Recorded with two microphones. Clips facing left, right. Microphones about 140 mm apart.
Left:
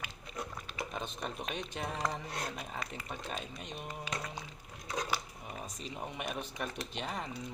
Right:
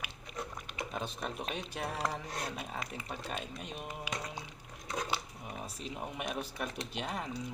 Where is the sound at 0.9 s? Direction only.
5° right (ahead or behind).